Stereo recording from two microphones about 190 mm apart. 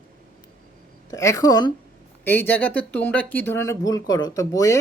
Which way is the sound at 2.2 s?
10° left (ahead or behind).